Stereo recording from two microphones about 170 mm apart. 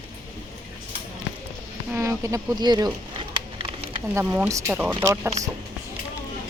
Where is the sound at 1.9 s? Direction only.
15° right (ahead or behind).